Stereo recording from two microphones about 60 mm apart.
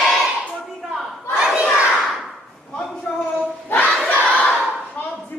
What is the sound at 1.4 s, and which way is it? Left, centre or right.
Crowd, centre.